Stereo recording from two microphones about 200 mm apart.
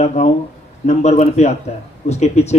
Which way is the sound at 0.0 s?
35° left (ahead or behind).